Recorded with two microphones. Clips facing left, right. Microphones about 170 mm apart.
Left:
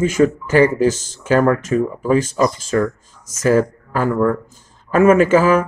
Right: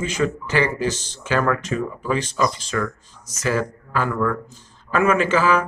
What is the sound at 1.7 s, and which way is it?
Speech, 30° left (ahead or behind).